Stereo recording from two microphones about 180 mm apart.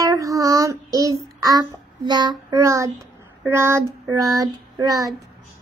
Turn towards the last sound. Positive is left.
turn(degrees=-20)  # may be behind; listen again after turning